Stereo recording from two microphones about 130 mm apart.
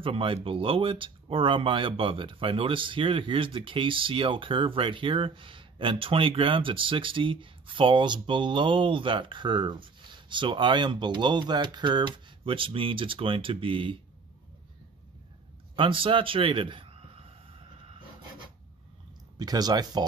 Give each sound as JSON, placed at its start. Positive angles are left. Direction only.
{"t": 0.0, "sound": "speech", "side_deg": -40}
{"t": 15.7, "sound": "speech", "side_deg": -40}
{"t": 19.3, "sound": "speech", "side_deg": -30}